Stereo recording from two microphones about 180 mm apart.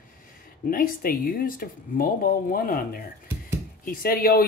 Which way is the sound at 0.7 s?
55° left (ahead or behind).